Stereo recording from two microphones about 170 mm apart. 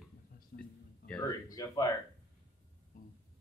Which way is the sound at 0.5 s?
65° left (ahead or behind).